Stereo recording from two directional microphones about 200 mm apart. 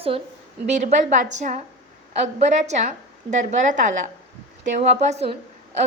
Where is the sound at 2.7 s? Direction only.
35° right (ahead or behind).